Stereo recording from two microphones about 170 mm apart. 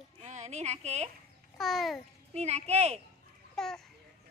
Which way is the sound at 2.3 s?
40° right (ahead or behind).